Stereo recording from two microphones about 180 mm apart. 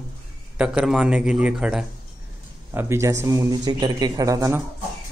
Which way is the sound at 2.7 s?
15° right (ahead or behind).